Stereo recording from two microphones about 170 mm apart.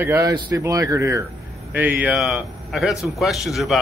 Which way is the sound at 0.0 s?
15° right (ahead or behind).